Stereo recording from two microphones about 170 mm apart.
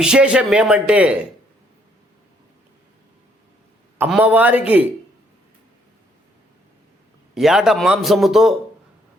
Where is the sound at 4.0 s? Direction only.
10° right (ahead or behind).